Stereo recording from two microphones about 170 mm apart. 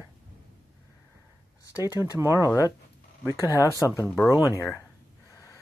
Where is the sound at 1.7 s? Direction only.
15° right (ahead or behind).